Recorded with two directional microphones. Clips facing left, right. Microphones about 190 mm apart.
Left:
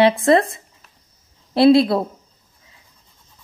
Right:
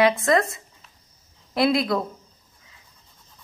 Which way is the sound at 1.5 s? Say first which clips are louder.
Left 8 dB; 30° left (ahead or behind).